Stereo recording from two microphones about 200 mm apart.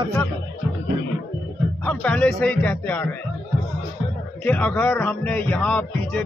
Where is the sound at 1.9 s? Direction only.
5° left (ahead or behind).